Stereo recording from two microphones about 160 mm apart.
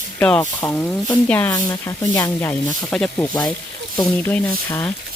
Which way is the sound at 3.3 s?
25° left (ahead or behind).